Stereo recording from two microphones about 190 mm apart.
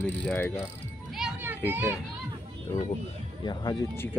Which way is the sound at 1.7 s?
10° right (ahead or behind).